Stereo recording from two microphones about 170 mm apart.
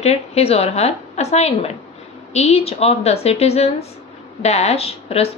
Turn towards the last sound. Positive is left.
turn(degrees=35)  # may be behind; listen again after turning